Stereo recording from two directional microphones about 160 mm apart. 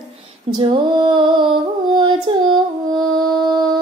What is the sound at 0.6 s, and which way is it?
Female singing, 30° right (ahead or behind).